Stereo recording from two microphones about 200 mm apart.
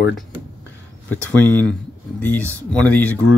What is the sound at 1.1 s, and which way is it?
Speech, 10° left (ahead or behind).